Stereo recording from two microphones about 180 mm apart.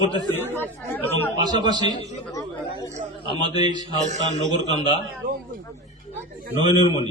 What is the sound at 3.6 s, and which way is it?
Speech, 25° right (ahead or behind).